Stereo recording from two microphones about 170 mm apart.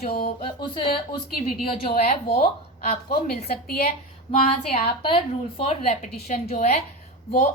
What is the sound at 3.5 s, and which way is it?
Speech, 60° left (ahead or behind).